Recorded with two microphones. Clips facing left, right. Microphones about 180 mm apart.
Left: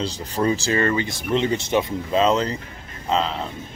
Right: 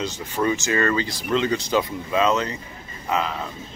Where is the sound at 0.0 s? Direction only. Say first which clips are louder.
Left 1 dB; 35° left (ahead or behind).